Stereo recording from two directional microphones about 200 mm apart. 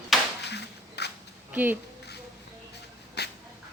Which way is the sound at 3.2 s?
55° left (ahead or behind).